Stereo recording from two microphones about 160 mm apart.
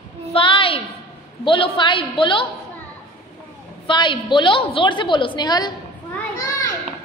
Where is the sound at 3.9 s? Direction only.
30° left (ahead or behind).